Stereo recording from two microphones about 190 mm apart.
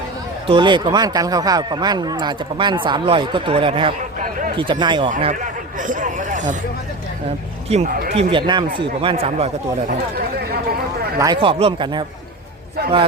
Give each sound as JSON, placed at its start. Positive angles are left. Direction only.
{"t": 0.4, "sound": "speech", "side_deg": -25}
{"t": 4.2, "sound": "speech", "side_deg": -45}
{"t": 4.5, "sound": "speech", "side_deg": -25}
{"t": 5.1, "sound": "a man's voice", "side_deg": -40}
{"t": 7.7, "sound": "a man's voice", "side_deg": -35}
{"t": 11.2, "sound": "speech", "side_deg": -25}